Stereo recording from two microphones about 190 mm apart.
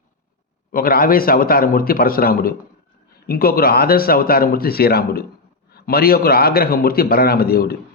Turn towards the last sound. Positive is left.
turn(degrees=55)  # may be behind; listen again after turning